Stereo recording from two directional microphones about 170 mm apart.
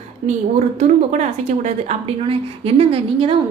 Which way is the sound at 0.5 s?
40° right (ahead or behind).